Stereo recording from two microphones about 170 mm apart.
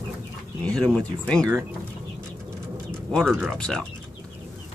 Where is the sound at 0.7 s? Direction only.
5° left (ahead or behind).